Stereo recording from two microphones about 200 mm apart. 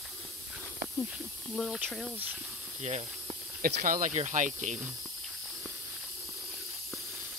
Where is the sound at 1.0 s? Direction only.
Centre (ahead or behind).